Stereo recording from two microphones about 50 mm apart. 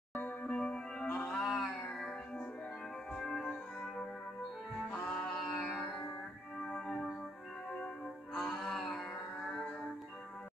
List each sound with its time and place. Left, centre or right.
0.5 s music: centre
1.1 s a sound: centre
1.9 s music: centre
5.1 s music: centre
6.6 s music: centre
8.4 s music: centre